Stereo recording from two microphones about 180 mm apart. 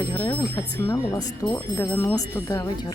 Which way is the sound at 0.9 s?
15° left (ahead or behind).